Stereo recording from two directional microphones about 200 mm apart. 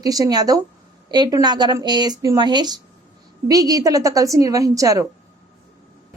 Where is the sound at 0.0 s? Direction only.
20° right (ahead or behind).